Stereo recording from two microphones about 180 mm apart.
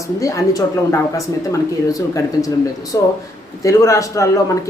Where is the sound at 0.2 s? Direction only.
20° left (ahead or behind).